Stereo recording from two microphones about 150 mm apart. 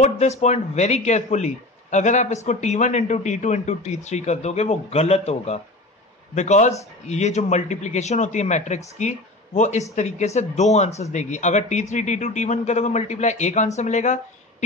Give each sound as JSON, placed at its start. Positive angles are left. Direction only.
{"t": 0.0, "sound": "speech", "side_deg": 50}